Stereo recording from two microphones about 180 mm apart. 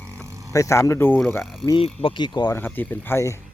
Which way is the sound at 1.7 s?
30° left (ahead or behind).